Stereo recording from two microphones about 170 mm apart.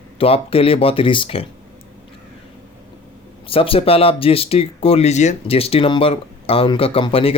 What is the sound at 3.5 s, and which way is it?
Speech, 35° left (ahead or behind).